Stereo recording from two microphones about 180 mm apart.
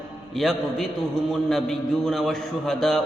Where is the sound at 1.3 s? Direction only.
Centre (ahead or behind).